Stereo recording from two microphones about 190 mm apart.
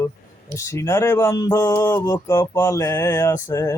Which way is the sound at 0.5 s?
15° left (ahead or behind).